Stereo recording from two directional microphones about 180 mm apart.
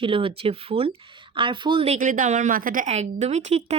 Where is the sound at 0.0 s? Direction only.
30° right (ahead or behind).